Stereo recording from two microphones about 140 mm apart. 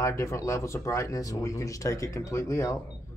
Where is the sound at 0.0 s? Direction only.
20° left (ahead or behind).